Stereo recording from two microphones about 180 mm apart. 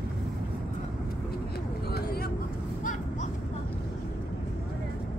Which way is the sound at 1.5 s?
60° left (ahead or behind).